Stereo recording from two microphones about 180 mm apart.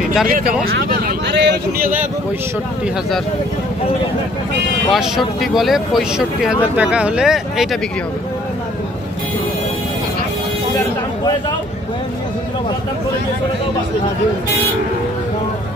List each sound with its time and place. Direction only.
0.3 s speech: 55° right (ahead or behind)
4.9 s speech: centre (ahead or behind)